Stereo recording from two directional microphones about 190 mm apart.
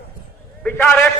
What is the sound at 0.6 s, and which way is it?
Speech, 10° left (ahead or behind).